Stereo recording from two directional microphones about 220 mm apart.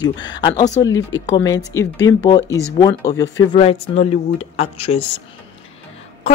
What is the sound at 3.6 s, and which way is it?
Speech, 25° left (ahead or behind).